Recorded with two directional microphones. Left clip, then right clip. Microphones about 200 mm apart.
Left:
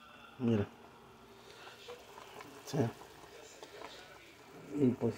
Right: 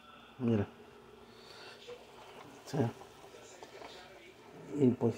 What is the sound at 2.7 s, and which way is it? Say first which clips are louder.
Speech: even; centre (ahead or behind).